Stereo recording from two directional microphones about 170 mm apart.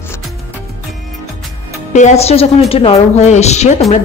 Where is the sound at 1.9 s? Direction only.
40° left (ahead or behind).